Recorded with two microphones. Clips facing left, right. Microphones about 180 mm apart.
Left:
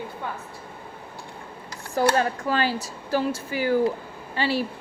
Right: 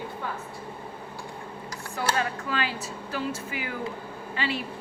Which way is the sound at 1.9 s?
40° left (ahead or behind).